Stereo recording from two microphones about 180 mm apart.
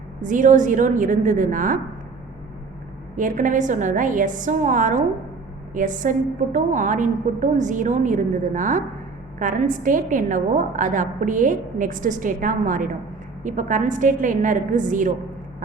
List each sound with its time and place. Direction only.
0.2 s a woman's voice: 45° right (ahead or behind)
3.2 s a woman's voice: 45° right (ahead or behind)